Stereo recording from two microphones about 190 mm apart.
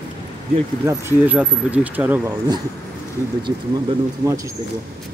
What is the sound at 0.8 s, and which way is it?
Speech, 10° right (ahead or behind).